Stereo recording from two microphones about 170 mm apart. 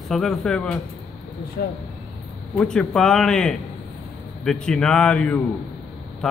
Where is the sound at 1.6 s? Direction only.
65° left (ahead or behind).